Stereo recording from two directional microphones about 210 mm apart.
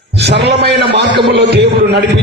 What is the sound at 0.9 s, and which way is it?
A man's voice, 55° right (ahead or behind).